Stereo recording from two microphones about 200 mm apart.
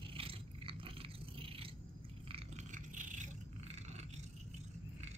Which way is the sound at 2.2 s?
30° right (ahead or behind).